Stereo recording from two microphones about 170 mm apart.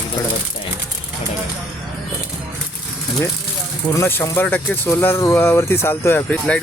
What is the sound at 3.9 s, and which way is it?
Speech, 15° left (ahead or behind).